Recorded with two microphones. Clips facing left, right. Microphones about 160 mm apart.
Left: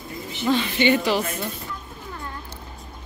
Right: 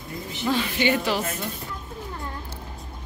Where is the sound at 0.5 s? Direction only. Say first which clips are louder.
Left 3 dB; 5° right (ahead or behind).